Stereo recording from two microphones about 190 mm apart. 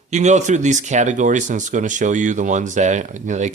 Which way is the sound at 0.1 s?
40° right (ahead or behind).